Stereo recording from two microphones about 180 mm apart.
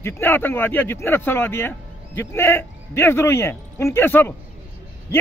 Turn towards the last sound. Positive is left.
turn(degrees=15)  # may be behind; listen again after turning